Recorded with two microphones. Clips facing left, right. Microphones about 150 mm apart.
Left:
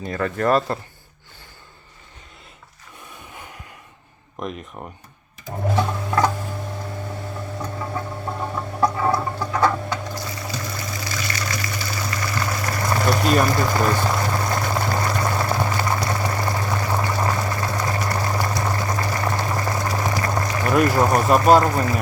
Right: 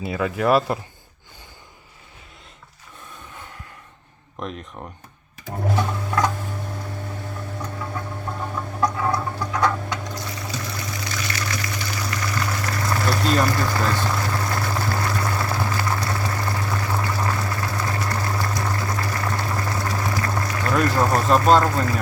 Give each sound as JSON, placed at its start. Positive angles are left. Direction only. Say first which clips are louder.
{"t": 0.0, "sound": "speech", "louder": "even", "side_deg": -5}
{"t": 4.4, "sound": "speech", "louder": "left 1 dB", "side_deg": 5}
{"t": 5.7, "sound": "sewing machine", "louder": "left 2 dB", "side_deg": 10}
{"t": 7.6, "sound": "a sound", "louder": "left 3 dB", "side_deg": 10}